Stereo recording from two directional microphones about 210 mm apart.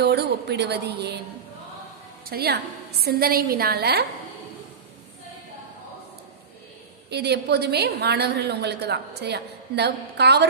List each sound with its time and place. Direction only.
0.0 s a woman's voice: 50° right (ahead or behind)
2.2 s a woman's voice: 50° right (ahead or behind)
7.1 s a woman's voice: 50° right (ahead or behind)